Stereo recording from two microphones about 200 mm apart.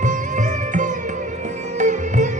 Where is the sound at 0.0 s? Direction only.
40° right (ahead or behind).